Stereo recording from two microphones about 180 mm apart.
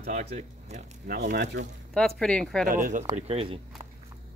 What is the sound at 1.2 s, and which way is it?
Speech, 65° right (ahead or behind).